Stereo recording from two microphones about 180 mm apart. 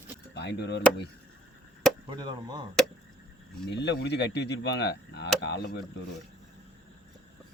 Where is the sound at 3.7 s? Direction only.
70° left (ahead or behind).